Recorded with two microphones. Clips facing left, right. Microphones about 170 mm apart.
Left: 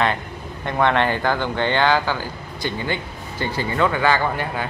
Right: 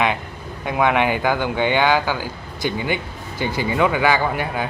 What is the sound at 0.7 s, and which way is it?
Speech, 10° right (ahead or behind).